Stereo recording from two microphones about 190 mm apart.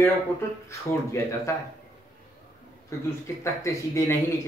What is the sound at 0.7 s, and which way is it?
Speech, 15° left (ahead or behind).